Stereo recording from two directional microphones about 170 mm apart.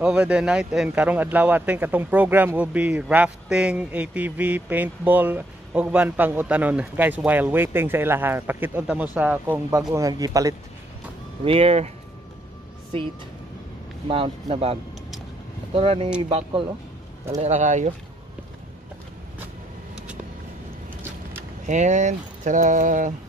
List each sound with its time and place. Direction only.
0.0 s a man's voice: 5° right (ahead or behind)
11.4 s speech: 35° right (ahead or behind)
14.0 s speech: 30° right (ahead or behind)
17.4 s speech: 45° right (ahead or behind)
21.6 s speech: 45° right (ahead or behind)